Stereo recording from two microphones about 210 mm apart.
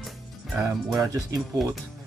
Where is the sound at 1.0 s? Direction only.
15° right (ahead or behind).